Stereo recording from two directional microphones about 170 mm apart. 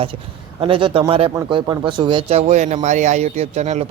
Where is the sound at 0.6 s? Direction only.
30° right (ahead or behind).